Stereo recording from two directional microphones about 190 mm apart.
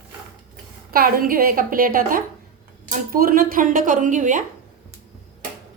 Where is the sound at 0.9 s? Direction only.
50° right (ahead or behind).